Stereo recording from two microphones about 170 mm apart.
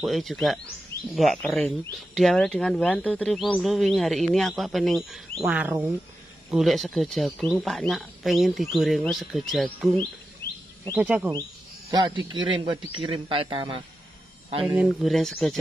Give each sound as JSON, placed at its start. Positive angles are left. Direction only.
{"t": 0.0, "sound": "speech", "side_deg": 0}
{"t": 10.4, "sound": "a sound", "side_deg": 75}
{"t": 11.0, "sound": "speech", "side_deg": -10}
{"t": 12.2, "sound": "speech", "side_deg": -30}
{"t": 14.8, "sound": "speech", "side_deg": 0}